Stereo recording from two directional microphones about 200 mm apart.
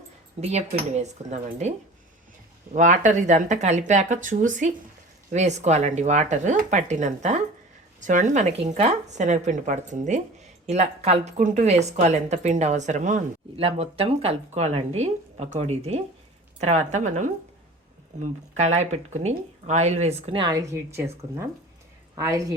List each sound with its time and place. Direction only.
0.5 s speech: 35° right (ahead or behind)
2.7 s speech: 40° right (ahead or behind); by 22.5 s 15° right (ahead or behind)